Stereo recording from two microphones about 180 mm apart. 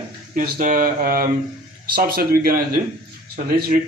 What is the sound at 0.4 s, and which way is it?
Speech, 50° right (ahead or behind).